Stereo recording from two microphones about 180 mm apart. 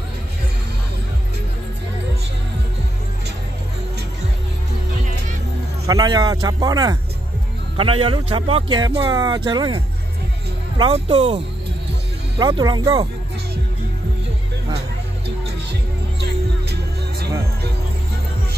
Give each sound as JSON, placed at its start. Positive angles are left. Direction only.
{"t": 5.9, "sound": "a man's voice", "side_deg": -20}